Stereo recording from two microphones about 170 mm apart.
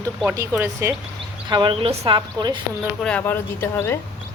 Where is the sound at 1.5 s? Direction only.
25° right (ahead or behind).